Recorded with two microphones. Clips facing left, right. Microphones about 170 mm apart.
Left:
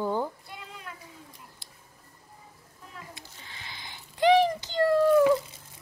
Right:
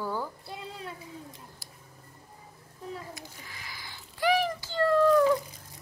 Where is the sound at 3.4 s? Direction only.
25° left (ahead or behind).